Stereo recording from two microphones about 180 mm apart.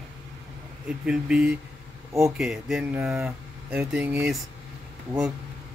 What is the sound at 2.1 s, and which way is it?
Speech, 15° right (ahead or behind).